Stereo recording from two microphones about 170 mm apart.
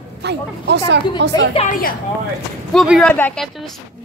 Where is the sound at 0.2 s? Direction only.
85° right.